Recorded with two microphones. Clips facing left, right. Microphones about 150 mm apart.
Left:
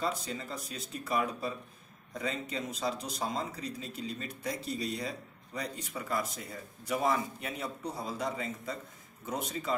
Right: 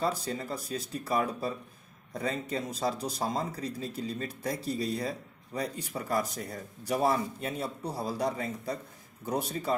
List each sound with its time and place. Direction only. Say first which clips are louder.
0.0 s speech: right 4 dB; 40° right (ahead or behind)